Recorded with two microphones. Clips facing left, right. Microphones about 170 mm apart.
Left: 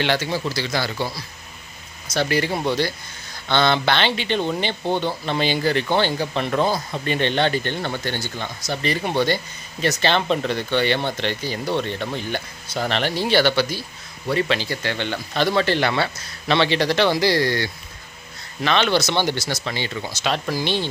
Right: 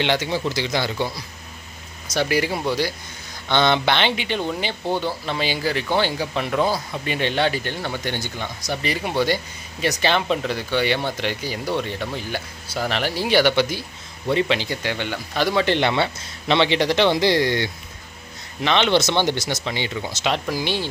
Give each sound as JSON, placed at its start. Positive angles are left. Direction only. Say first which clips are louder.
{"t": 0.0, "sound": "speech", "louder": "even", "side_deg": -20}
{"t": 2.1, "sound": "speech", "louder": "even", "side_deg": -10}
{"t": 4.8, "sound": "speech", "louder": "left 1 dB", "side_deg": 20}
{"t": 5.2, "sound": "speech", "louder": "left 3 dB", "side_deg": -5}